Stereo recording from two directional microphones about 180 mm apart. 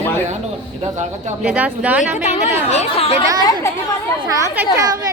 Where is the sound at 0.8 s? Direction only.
40° right (ahead or behind).